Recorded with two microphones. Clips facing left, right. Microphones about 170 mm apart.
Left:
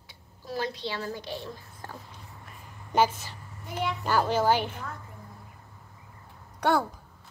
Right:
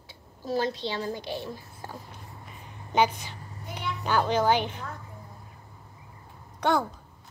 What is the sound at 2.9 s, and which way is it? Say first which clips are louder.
A child's voice: even; 5° left (ahead or behind).